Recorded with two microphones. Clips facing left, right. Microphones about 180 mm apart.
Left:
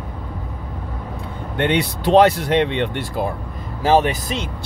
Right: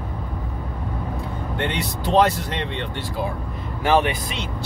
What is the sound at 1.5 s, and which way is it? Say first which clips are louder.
Speech: left 8 dB; 65° left (ahead or behind).